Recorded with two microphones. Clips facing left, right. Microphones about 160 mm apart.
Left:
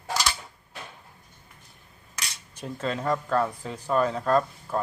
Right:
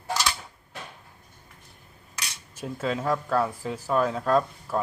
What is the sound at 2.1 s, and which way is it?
Cutlery, centre (ahead or behind).